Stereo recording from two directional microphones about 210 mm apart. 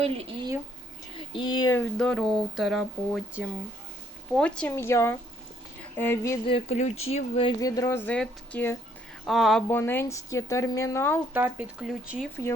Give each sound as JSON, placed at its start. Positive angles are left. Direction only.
{"t": 0.0, "sound": "speech", "side_deg": -25}
{"t": 1.3, "sound": "a woman's voice", "side_deg": 20}
{"t": 6.5, "sound": "a woman's voice", "side_deg": 30}
{"t": 11.3, "sound": "speech", "side_deg": -10}